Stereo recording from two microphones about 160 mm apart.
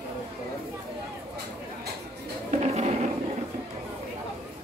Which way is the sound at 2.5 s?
45° right (ahead or behind).